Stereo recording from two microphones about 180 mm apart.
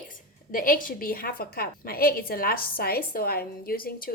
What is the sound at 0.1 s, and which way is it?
A woman's voice, 50° left (ahead or behind).